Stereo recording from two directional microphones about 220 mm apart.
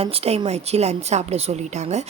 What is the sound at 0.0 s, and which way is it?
A woman's voice, 25° right (ahead or behind).